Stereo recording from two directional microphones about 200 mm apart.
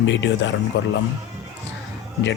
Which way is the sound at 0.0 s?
65° left (ahead or behind).